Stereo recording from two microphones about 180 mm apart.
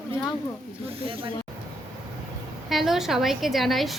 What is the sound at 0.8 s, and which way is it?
Speech, 30° right (ahead or behind).